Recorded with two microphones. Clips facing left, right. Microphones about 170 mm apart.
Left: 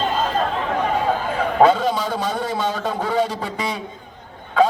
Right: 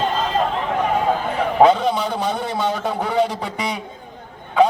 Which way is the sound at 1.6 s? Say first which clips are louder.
Right 1 dB; 15° right (ahead or behind).